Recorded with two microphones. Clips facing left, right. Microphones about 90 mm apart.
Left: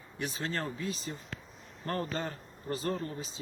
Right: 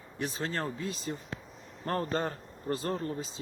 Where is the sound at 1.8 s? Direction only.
35° right (ahead or behind).